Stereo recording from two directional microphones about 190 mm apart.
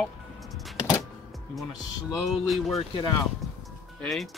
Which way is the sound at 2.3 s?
Centre (ahead or behind).